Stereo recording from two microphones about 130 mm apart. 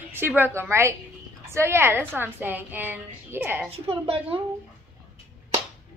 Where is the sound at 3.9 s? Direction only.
45° right (ahead or behind).